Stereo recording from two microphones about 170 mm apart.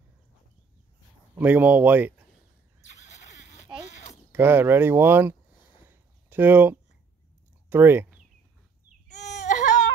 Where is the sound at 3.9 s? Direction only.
45° left (ahead or behind).